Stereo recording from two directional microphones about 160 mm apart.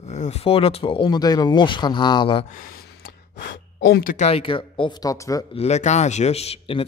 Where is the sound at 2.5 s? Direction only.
60° left (ahead or behind).